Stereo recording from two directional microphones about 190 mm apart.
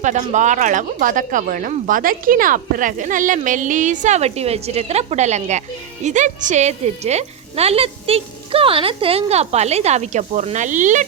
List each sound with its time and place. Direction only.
0.0 s speech: 40° right (ahead or behind)